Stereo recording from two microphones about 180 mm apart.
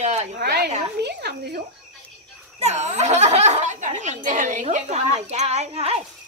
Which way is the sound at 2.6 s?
40° right (ahead or behind).